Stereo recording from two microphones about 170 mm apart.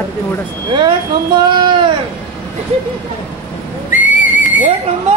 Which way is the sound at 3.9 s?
50° left (ahead or behind).